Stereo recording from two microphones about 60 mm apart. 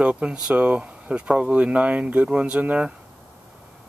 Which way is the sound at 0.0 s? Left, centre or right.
Centre.